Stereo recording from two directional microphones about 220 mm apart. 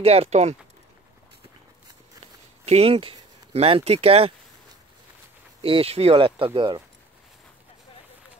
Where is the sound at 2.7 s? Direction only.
25° right (ahead or behind).